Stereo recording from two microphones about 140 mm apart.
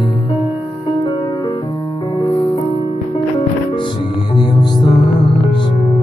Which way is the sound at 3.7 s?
35° left (ahead or behind).